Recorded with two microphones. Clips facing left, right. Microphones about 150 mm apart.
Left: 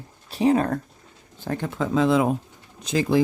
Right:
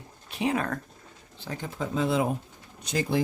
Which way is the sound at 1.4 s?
60° left (ahead or behind).